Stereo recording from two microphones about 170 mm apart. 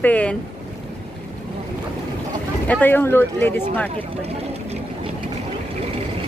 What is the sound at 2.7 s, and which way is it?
Speech, 10° left (ahead or behind).